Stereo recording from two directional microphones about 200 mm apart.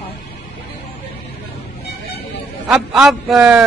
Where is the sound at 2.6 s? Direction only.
5° right (ahead or behind).